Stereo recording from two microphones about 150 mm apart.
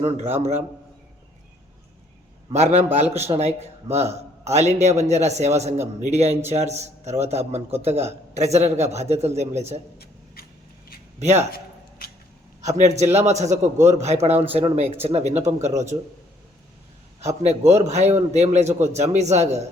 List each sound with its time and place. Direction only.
2.6 s a man's voice: 50° right (ahead or behind)
11.2 s a man's voice: 50° right (ahead or behind)
11.5 s a sound: 90° left
12.6 s a man's voice: 50° right (ahead or behind)
15.9 s a man's voice: 25° right (ahead or behind)
17.2 s a man's voice: 50° right (ahead or behind)
17.6 s a man's voice: 20° right (ahead or behind)
17.8 s a man's voice: 50° right (ahead or behind)